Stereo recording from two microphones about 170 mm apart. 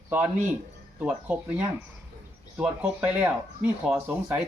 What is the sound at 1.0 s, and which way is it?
Speech, 10° right (ahead or behind).